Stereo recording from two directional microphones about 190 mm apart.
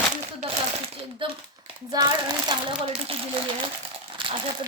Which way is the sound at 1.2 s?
25° right (ahead or behind).